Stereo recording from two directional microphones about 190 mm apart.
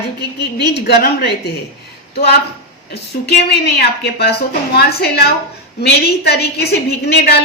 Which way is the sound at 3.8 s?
55° left (ahead or behind).